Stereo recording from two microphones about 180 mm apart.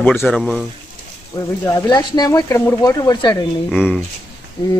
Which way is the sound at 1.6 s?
20° left (ahead or behind).